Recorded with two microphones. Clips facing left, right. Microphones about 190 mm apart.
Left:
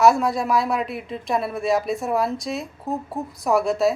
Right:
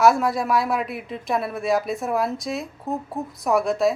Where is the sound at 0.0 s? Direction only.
Centre (ahead or behind).